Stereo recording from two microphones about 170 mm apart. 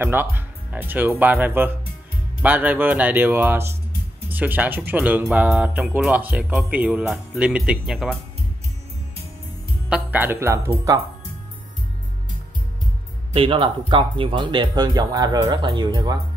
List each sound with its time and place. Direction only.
0.0 s speech: 10° right (ahead or behind)
9.8 s speech: 10° right (ahead or behind)
13.3 s speech: 30° right (ahead or behind)